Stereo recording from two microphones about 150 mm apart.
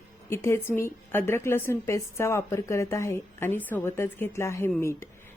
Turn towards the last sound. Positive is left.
turn(degrees=20)  # may be behind; listen again after turning